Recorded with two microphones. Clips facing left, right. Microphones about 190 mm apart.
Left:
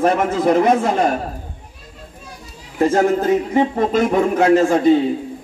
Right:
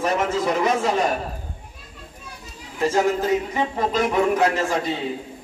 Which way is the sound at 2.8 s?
55° left (ahead or behind).